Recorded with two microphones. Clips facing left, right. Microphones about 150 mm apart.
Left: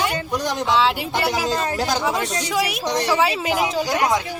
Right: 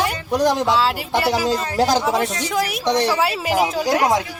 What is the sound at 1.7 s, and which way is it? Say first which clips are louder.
Speech: right 5 dB; 35° right (ahead or behind).